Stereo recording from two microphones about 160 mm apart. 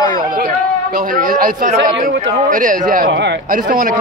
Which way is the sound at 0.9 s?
60° right (ahead or behind).